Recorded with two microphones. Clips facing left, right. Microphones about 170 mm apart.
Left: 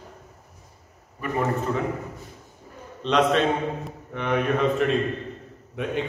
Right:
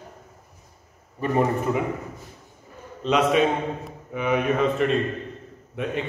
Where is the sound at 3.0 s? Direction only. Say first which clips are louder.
Right 1 dB; 5° right (ahead or behind).